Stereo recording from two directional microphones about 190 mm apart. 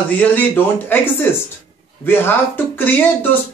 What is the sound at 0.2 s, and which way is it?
Speech, 10° left (ahead or behind).